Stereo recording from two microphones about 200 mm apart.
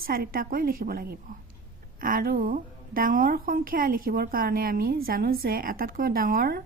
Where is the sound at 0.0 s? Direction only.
45° right (ahead or behind).